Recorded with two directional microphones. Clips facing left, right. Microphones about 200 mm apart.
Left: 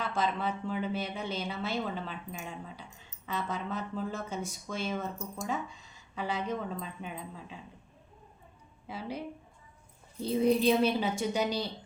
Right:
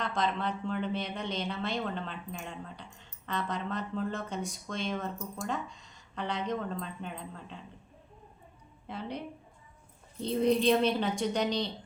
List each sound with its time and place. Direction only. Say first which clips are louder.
0.0 s speech: even; 5° left (ahead or behind)
8.9 s a woman's voice: even; 5° left (ahead or behind)